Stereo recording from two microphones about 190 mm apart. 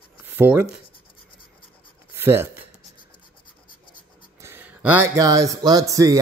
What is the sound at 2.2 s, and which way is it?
Speech, 10° right (ahead or behind).